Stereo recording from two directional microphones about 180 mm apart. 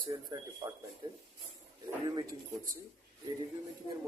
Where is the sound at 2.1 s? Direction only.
20° right (ahead or behind).